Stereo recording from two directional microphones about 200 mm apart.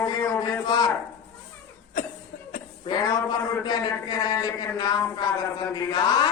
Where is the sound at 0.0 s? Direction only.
20° left (ahead or behind).